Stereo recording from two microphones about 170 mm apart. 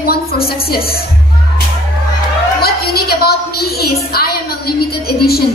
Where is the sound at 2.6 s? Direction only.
65° left (ahead or behind).